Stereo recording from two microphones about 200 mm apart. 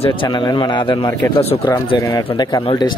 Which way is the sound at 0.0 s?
25° left (ahead or behind).